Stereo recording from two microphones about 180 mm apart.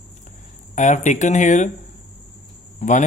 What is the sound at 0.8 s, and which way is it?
Speech, 40° left (ahead or behind).